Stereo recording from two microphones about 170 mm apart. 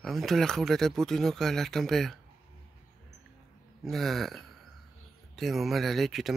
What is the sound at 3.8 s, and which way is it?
Speech, centre (ahead or behind).